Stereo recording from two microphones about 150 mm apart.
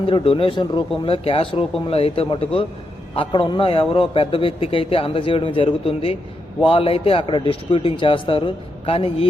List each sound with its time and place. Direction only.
0.0 s a man's voice: 35° left (ahead or behind)